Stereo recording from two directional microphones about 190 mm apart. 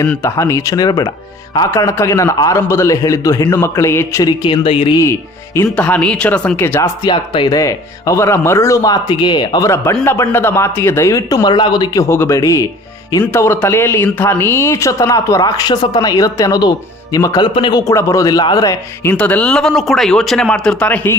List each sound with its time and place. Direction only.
0.0 s speech: 15° left (ahead or behind); by 4.9 s 30° left (ahead or behind)
5.6 s speech: 5° left (ahead or behind)
7.1 s speech: 25° left (ahead or behind)
19.1 s speech: 5° left (ahead or behind)